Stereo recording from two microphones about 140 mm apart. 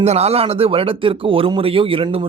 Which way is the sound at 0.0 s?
50° right (ahead or behind).